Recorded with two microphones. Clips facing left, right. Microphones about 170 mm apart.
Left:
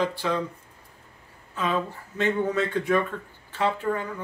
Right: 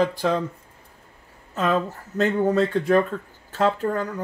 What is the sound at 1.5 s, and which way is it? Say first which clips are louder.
Speech: right 4 dB; 45° right (ahead or behind).